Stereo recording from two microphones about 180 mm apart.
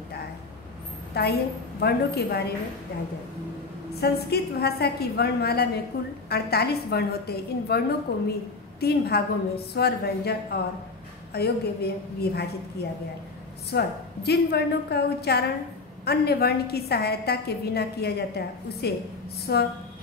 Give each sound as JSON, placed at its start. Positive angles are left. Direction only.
{"t": 1.1, "sound": "a woman's voice", "side_deg": 65}
{"t": 4.0, "sound": "a woman's voice", "side_deg": 60}